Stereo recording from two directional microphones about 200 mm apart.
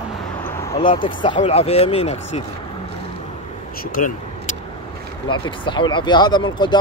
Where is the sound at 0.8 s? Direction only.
25° left (ahead or behind).